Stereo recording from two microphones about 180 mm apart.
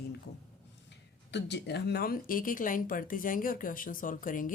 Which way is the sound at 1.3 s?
70° left (ahead or behind).